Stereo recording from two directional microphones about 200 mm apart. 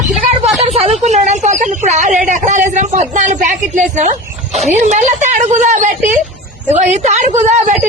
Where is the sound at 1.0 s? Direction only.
35° right (ahead or behind).